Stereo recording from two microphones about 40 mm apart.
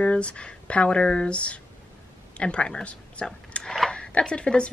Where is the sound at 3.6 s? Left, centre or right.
Centre.